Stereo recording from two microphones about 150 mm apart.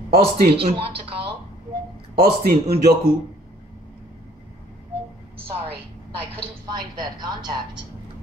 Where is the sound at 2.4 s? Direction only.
75° right (ahead or behind).